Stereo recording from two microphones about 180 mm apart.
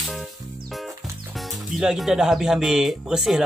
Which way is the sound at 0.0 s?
Centre (ahead or behind).